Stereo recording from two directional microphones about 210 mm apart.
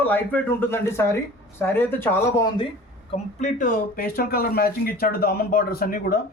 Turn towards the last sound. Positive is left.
turn(degrees=45)  # may be behind; listen again after turning